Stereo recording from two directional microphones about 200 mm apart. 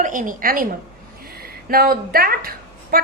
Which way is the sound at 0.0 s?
40° right (ahead or behind).